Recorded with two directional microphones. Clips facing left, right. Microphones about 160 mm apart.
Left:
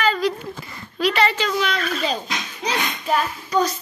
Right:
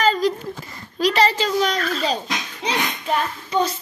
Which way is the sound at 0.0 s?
40° right (ahead or behind).